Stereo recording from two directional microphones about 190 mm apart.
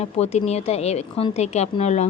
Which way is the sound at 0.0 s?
35° left (ahead or behind).